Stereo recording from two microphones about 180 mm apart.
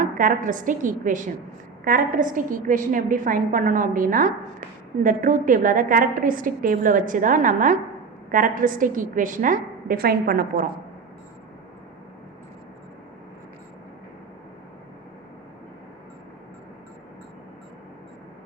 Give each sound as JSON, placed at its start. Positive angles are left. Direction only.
{"t": 0.0, "sound": "a woman's voice", "side_deg": -45}